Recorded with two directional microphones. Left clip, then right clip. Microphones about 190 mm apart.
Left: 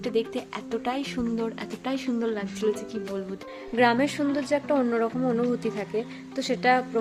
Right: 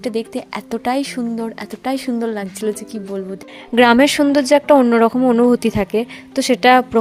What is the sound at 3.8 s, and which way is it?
A woman's voice, 60° right (ahead or behind).